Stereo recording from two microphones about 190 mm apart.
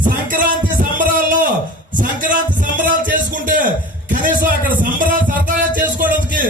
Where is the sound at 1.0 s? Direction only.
45° right (ahead or behind).